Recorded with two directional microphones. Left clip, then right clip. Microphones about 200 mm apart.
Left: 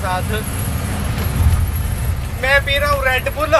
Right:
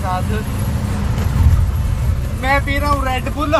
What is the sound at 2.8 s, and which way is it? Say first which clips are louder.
Speech: left 2 dB; 35° left (ahead or behind).